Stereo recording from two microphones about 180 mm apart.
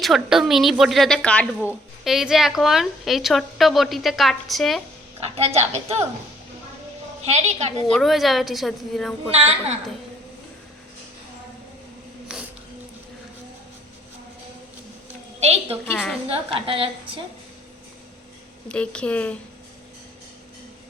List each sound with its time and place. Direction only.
0.0 s a woman's voice: centre (ahead or behind)
5.2 s a woman's voice: 35° right (ahead or behind)
7.3 s a woman's voice: 40° right (ahead or behind)
7.9 s a woman's voice: centre (ahead or behind)
15.4 s a woman's voice: 35° right (ahead or behind)
15.9 s a woman's voice: 5° left (ahead or behind)
16.3 s a woman's voice: 30° right (ahead or behind)
18.7 s a woman's voice: 5° left (ahead or behind)